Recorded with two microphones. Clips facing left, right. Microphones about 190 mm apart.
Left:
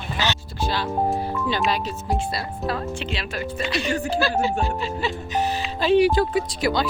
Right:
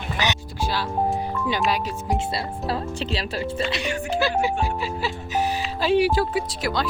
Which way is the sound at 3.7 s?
15° right (ahead or behind).